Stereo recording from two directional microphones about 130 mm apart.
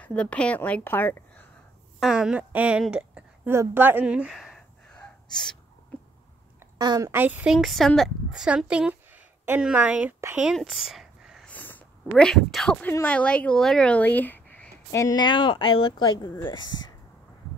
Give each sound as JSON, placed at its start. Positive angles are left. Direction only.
{"t": 0.0, "sound": "a woman's voice", "side_deg": 10}
{"t": 2.0, "sound": "a woman's voice", "side_deg": -5}
{"t": 2.9, "sound": "a sound", "side_deg": -10}
{"t": 3.5, "sound": "gasp", "side_deg": -15}
{"t": 6.8, "sound": "a woman's voice", "side_deg": -30}
{"t": 7.1, "sound": "a woman's voice", "side_deg": -15}
{"t": 7.5, "sound": "speech", "side_deg": 0}
{"t": 10.5, "sound": "a sound", "side_deg": 0}
{"t": 11.4, "sound": "sniff", "side_deg": 15}
{"t": 12.2, "sound": "speech", "side_deg": 5}
{"t": 14.9, "sound": "speech", "side_deg": 25}